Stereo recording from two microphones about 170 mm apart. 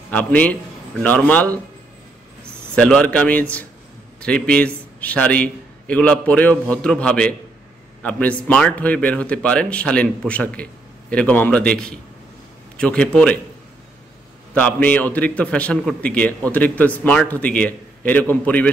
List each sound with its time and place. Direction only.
0.1 s a man's voice: 10° left (ahead or behind)
2.7 s a man's voice: 5° left (ahead or behind)
14.5 s a man's voice: 10° left (ahead or behind)